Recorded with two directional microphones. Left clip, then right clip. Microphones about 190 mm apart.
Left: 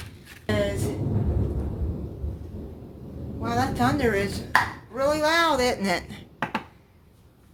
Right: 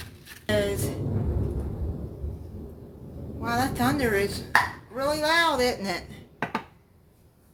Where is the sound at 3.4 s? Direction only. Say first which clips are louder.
Left 1 dB; 5° right (ahead or behind); by 5.7 s 15° left (ahead or behind).